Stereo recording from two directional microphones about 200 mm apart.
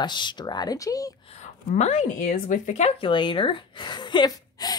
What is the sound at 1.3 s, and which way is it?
A woman's voice, 35° left (ahead or behind).